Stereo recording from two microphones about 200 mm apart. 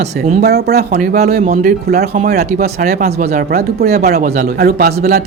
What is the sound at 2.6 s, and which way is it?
Speech, 35° right (ahead or behind).